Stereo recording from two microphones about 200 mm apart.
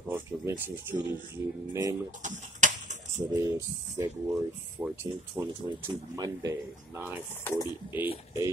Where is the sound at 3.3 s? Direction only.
15° right (ahead or behind).